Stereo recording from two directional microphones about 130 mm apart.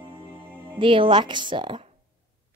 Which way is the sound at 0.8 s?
40° right (ahead or behind).